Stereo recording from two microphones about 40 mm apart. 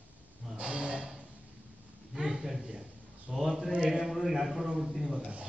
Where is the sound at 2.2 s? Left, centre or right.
Right.